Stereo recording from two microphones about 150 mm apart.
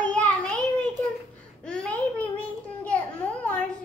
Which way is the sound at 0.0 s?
10° left (ahead or behind).